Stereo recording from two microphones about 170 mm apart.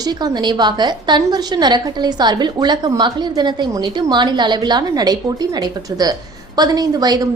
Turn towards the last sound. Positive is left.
turn(degrees=-25)  # may be behind; listen again after turning